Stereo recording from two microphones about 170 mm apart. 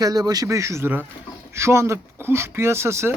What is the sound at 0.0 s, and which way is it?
Speech, 20° right (ahead or behind).